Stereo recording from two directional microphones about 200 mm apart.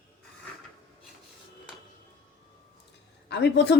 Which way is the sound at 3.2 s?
55° left (ahead or behind).